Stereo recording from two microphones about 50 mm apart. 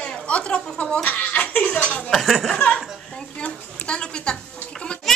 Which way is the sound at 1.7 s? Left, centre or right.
Centre.